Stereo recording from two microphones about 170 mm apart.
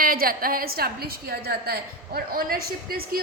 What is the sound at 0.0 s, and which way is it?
A woman's voice, 60° right (ahead or behind).